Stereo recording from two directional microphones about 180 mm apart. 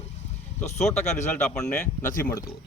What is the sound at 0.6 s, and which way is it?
Speech, 40° left (ahead or behind).